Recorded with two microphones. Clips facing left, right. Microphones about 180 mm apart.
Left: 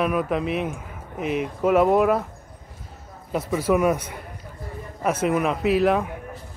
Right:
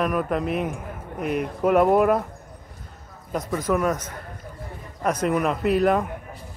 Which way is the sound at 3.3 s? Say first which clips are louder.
Left 2 dB; 10° left (ahead or behind).